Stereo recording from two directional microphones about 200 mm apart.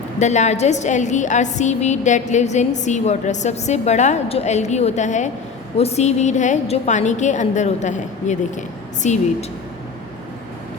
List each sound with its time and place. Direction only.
0.2 s a woman's voice: 35° left (ahead or behind)